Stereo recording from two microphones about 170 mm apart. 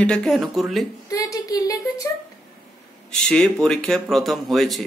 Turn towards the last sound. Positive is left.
turn(degrees=0)  # may be behind; listen again after turning